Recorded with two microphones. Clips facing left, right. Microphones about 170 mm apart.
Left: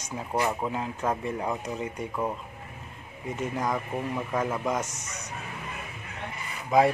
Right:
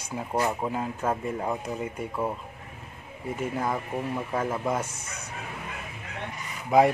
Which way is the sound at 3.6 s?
5° right (ahead or behind).